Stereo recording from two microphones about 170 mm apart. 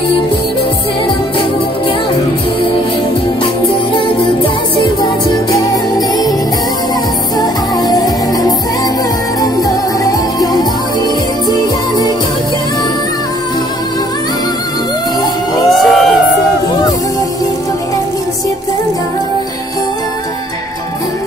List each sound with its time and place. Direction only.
5.5 s music: 20° left (ahead or behind)
7.3 s music: 20° left (ahead or behind)
15.7 s a sound: centre (ahead or behind)